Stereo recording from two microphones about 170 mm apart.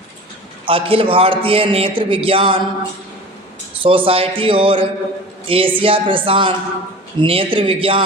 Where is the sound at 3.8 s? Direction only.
30° right (ahead or behind).